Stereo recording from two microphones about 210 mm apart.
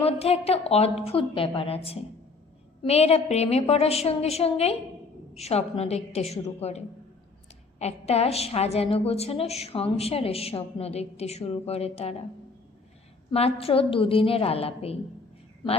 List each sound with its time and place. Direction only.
0.0 s a woman's voice: 30° left (ahead or behind)
13.3 s a woman's voice: 30° left (ahead or behind)